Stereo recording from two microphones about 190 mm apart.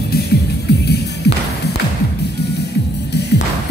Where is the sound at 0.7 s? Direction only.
60° left (ahead or behind).